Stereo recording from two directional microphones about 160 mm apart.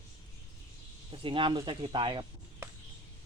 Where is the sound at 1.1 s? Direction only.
30° right (ahead or behind).